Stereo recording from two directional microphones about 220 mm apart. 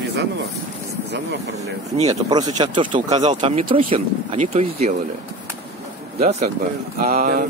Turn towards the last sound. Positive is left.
turn(degrees=-40)  # may be behind; listen again after turning